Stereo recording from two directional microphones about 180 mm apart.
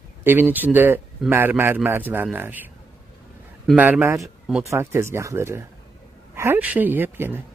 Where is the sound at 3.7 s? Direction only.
10° right (ahead or behind).